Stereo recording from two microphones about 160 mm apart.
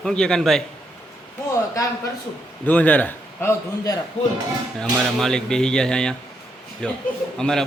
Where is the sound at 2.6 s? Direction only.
10° left (ahead or behind).